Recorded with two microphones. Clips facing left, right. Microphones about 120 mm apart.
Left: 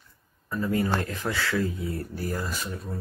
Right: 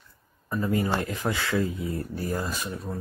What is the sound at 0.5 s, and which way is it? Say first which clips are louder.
Speech: even; 15° right (ahead or behind).